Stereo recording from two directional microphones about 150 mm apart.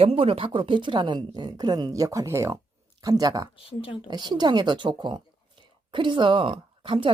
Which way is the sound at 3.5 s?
40° left (ahead or behind).